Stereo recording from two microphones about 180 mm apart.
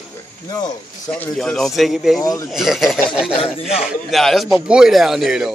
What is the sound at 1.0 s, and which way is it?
Speech, 5° left (ahead or behind).